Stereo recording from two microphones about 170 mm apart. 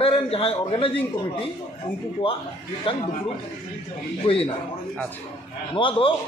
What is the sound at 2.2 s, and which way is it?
Speech, 35° left (ahead or behind).